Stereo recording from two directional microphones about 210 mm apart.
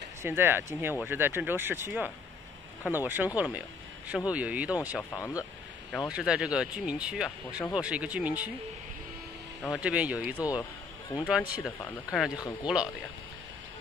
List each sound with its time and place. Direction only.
0.2 s speech: 10° right (ahead or behind)
5.1 s speech: 15° left (ahead or behind)
5.9 s speech: centre (ahead or behind)
9.7 s speech: 5° right (ahead or behind)
10.6 s a sound: 20° left (ahead or behind)
11.2 s speech: 5° right (ahead or behind)